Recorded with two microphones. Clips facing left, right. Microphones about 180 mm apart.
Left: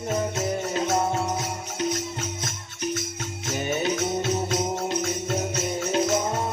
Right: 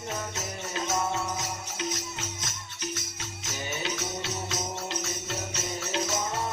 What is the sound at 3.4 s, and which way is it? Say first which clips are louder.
Music: left 9 dB; 55° left (ahead or behind).